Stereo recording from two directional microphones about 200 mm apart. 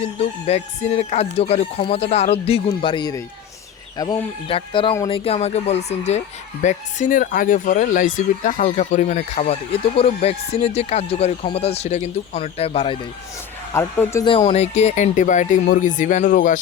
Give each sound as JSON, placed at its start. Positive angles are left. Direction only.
{"t": 0.0, "sound": "speech", "side_deg": 30}
{"t": 13.7, "sound": "speech", "side_deg": 15}
{"t": 14.3, "sound": "speech", "side_deg": 25}